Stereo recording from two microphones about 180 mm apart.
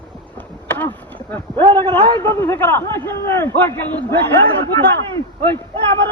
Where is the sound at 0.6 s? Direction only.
10° left (ahead or behind).